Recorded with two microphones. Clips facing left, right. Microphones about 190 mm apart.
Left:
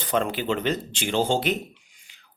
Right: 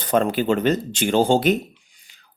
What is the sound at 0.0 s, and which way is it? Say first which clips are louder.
Speech: right 5 dB; 45° right (ahead or behind).